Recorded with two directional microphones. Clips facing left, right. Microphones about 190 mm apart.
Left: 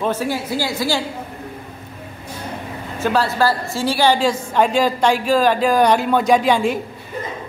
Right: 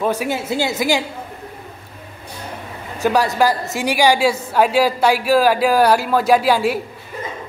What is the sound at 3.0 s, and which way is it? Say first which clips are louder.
Speech: right 2 dB; 15° right (ahead or behind).